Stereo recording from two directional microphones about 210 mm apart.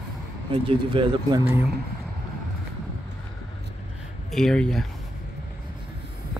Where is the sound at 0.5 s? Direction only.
25° right (ahead or behind).